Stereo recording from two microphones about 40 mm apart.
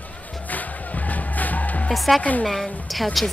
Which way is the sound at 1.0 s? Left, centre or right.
Left.